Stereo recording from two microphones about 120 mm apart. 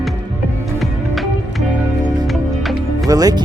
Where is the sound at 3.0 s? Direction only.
30° right (ahead or behind).